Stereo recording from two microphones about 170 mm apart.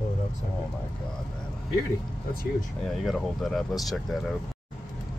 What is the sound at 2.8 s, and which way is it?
Speech, centre (ahead or behind).